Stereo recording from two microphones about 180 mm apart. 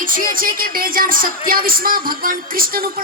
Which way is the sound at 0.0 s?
50° right (ahead or behind).